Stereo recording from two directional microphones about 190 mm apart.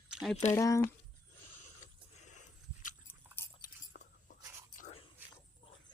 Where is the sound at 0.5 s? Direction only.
15° left (ahead or behind).